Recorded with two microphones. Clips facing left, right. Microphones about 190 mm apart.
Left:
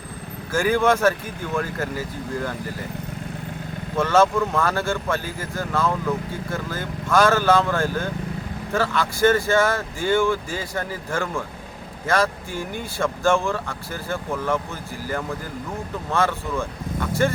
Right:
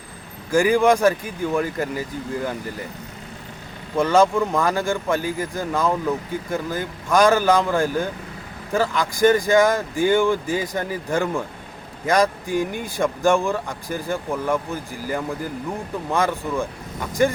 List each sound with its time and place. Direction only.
0.5 s speech: 15° right (ahead or behind)
3.9 s speech: 15° right (ahead or behind)